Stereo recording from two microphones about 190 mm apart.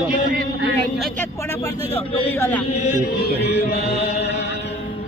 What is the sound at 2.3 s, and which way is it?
Speech, 15° left (ahead or behind).